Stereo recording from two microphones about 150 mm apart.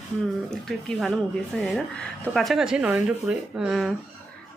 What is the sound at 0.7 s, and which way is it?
Speech, centre (ahead or behind).